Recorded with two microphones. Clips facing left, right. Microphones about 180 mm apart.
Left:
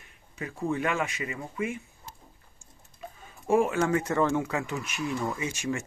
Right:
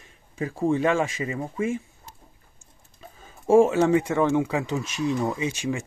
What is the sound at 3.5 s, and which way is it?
Speech, 25° right (ahead or behind).